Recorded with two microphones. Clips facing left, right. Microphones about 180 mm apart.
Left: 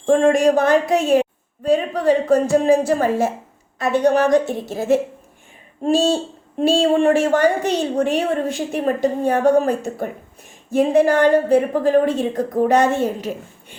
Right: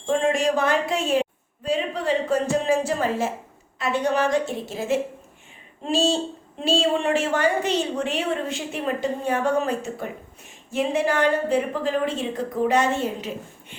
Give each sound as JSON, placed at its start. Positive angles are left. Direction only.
{"t": 0.0, "sound": "a woman's voice", "side_deg": 45}